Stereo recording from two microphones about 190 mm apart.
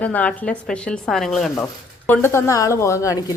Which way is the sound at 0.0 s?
10° left (ahead or behind).